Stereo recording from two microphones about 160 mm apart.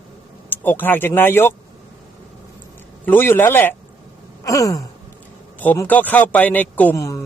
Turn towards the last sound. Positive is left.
turn(degrees=20)  # may be behind; listen again after turning